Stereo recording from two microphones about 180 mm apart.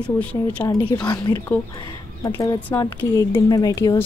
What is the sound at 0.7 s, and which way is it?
Speech, 20° left (ahead or behind).